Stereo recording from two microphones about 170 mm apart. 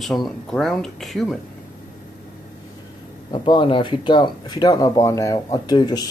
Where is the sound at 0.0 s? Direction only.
Centre (ahead or behind).